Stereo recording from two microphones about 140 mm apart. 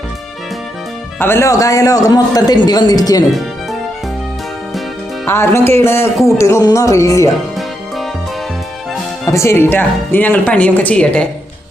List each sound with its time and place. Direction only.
1.2 s a man's voice: 20° left (ahead or behind)
5.2 s a man's voice: 15° left (ahead or behind)
9.3 s speech: 20° left (ahead or behind)